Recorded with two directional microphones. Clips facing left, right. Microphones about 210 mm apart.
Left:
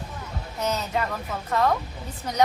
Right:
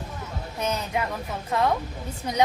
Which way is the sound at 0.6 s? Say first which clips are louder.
Left 1 dB; 10° right (ahead or behind).